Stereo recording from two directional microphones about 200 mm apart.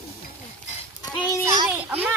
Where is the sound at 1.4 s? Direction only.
20° right (ahead or behind).